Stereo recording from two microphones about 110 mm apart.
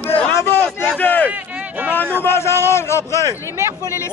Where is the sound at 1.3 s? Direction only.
15° right (ahead or behind).